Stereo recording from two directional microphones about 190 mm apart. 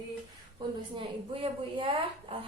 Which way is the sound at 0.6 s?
20° right (ahead or behind).